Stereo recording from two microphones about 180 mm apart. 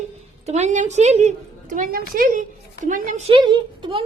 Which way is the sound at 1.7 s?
50° right (ahead or behind).